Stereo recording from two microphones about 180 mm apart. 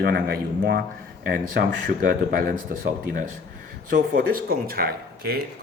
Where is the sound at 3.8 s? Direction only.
50° right (ahead or behind).